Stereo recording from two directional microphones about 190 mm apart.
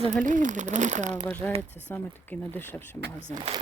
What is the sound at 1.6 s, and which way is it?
Speech, 10° left (ahead or behind).